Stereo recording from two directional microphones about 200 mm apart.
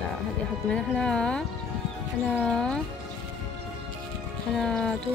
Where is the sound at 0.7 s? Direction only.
5° left (ahead or behind).